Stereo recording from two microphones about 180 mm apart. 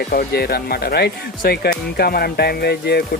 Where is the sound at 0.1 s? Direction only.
60° left (ahead or behind).